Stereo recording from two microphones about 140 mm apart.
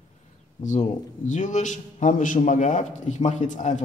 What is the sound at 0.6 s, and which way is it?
Speech, 60° left (ahead or behind).